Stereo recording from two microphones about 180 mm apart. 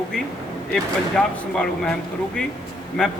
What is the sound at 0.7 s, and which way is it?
A man's voice, 5° left (ahead or behind).